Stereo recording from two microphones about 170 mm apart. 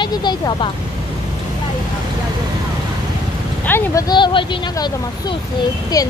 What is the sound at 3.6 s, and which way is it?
Speech, 15° left (ahead or behind).